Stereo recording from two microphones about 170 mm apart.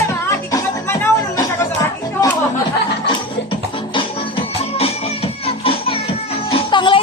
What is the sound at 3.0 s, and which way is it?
Music, 30° left (ahead or behind).